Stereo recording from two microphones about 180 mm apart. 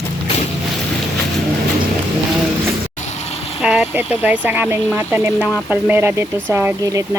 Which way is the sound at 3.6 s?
10° right (ahead or behind).